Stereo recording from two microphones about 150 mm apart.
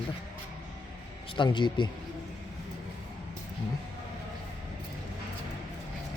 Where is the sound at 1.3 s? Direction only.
30° left (ahead or behind).